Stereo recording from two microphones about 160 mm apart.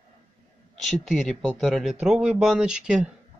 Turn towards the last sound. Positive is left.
turn(degrees=-5)  # may be behind; listen again after turning